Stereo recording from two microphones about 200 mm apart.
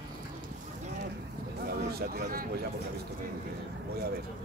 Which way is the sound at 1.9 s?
50° right (ahead or behind).